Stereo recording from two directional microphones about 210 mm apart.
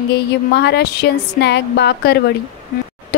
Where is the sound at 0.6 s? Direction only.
50° left (ahead or behind).